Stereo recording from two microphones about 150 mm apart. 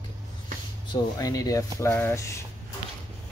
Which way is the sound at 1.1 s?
25° left (ahead or behind).